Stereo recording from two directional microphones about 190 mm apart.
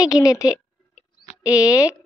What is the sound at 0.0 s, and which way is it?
A woman's voice, 20° left (ahead or behind).